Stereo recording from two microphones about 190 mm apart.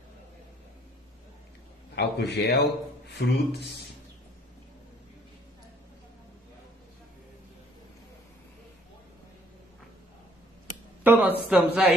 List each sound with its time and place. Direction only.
2.0 s a man's voice: 65° left (ahead or behind)
11.1 s a man's voice: 10° right (ahead or behind)